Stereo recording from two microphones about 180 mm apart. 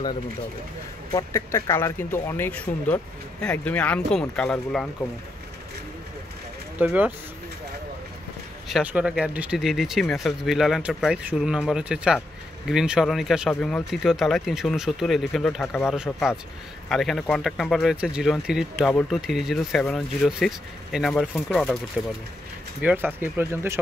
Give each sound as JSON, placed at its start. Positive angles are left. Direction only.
{"t": 1.1, "sound": "speech", "side_deg": 15}
{"t": 6.8, "sound": "speech", "side_deg": -10}
{"t": 8.6, "sound": "speech", "side_deg": -5}
{"t": 22.8, "sound": "speech", "side_deg": -10}